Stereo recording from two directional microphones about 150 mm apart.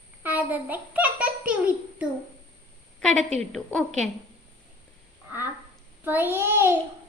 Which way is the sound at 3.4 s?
5° left (ahead or behind).